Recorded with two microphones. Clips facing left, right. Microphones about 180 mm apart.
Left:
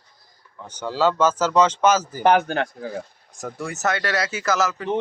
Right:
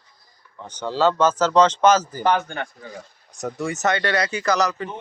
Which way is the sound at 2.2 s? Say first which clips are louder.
Left 6 dB; 70° left (ahead or behind).